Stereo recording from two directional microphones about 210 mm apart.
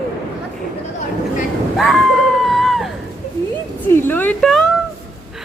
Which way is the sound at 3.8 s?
10° left (ahead or behind).